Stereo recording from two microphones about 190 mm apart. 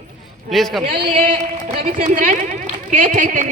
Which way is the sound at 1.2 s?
40° right (ahead or behind).